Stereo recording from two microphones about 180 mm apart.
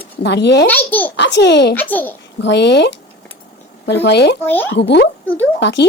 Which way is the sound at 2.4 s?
75° left (ahead or behind).